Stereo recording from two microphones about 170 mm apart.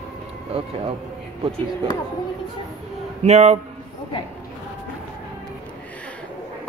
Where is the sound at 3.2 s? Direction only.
40° right (ahead or behind).